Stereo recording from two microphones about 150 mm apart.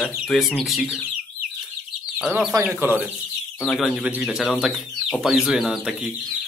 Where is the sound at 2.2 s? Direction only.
5° right (ahead or behind).